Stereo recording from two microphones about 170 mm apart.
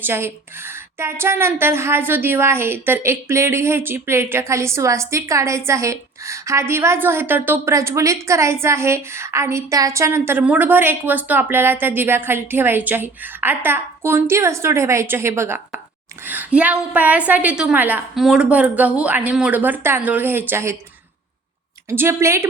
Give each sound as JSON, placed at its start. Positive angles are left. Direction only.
{"t": 0.0, "sound": "a woman's voice", "side_deg": -15}
{"t": 21.8, "sound": "a woman's voice", "side_deg": -15}